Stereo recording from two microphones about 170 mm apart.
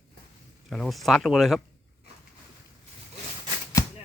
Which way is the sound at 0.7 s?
Centre (ahead or behind).